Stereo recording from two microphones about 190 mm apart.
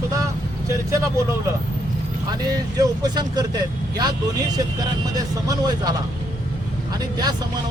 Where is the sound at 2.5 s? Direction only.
20° right (ahead or behind).